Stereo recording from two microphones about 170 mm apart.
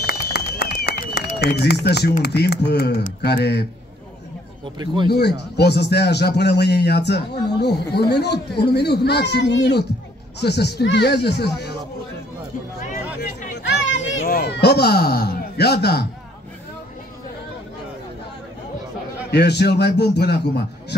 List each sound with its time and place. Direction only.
0.3 s a sound: 70° left (ahead or behind)
2.2 s speech: 70° left (ahead or behind)
4.7 s speech: 30° right (ahead or behind)
5.1 s speech: 80° left
10.4 s speech: 75° left (ahead or behind)
12.8 s chatter: 50° left (ahead or behind)
14.0 s a sound: 80° left
19.3 s speech: 75° left (ahead or behind)